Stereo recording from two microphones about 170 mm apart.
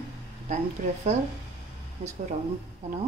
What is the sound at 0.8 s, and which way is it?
Speech, 45° right (ahead or behind).